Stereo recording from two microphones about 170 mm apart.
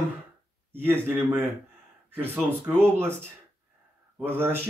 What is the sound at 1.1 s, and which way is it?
Speech, 10° right (ahead or behind).